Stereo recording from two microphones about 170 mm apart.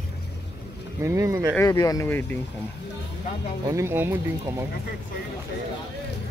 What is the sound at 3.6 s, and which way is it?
Speech, 15° right (ahead or behind).